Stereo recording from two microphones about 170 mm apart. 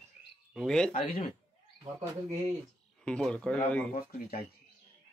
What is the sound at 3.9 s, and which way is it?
Speech, 60° left (ahead or behind).